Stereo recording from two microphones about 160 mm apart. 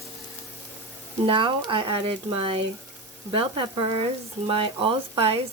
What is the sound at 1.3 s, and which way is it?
Speech, 30° right (ahead or behind).